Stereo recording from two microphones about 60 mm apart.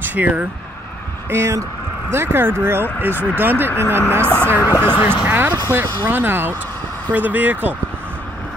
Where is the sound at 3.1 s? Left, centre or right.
Left.